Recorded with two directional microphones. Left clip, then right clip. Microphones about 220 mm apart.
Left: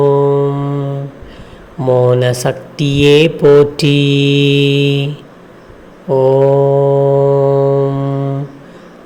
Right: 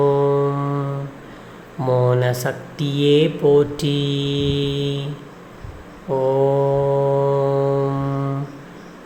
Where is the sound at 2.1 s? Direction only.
20° left (ahead or behind).